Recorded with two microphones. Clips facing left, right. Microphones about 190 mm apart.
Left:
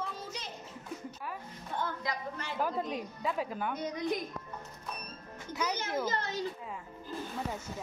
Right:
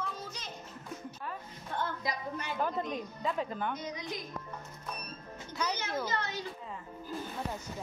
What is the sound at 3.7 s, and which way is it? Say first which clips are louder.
Speech: left 6 dB; 55° left (ahead or behind).